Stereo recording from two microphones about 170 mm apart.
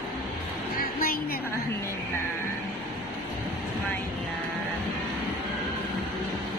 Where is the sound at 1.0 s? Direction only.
60° left (ahead or behind).